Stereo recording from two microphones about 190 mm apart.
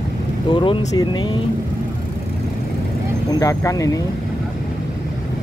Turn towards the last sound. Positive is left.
turn(degrees=15)  # may be behind; listen again after turning